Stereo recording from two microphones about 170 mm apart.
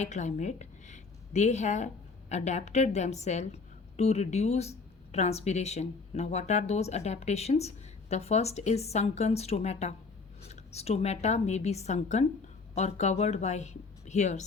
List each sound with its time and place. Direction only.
0.0 s a woman's voice: 45° left (ahead or behind)